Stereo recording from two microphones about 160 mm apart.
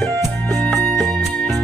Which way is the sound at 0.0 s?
Centre (ahead or behind).